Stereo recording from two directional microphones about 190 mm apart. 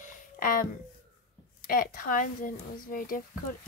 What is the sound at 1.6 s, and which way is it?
Speech, 50° left (ahead or behind).